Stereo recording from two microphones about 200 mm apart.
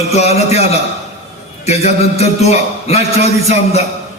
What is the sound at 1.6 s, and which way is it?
A man's voice, 30° left (ahead or behind).